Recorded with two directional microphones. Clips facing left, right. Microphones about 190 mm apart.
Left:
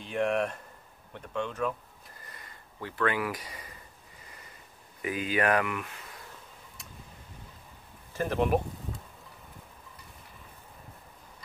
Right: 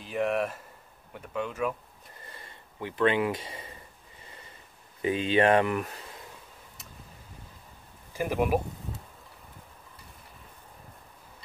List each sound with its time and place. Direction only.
0.0 s speech: centre (ahead or behind)
2.2 s a sound: 25° right (ahead or behind)
5.0 s speech: 25° right (ahead or behind)
6.8 s vehicle: centre (ahead or behind)
8.1 s speech: 10° right (ahead or behind)